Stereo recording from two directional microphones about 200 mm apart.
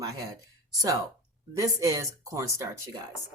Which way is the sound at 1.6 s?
15° right (ahead or behind).